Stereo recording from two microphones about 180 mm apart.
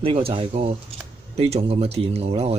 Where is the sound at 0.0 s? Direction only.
30° right (ahead or behind).